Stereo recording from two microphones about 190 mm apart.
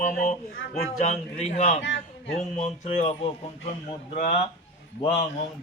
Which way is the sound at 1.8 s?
70° left (ahead or behind).